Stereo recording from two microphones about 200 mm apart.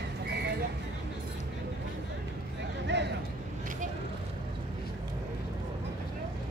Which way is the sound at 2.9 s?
60° right (ahead or behind).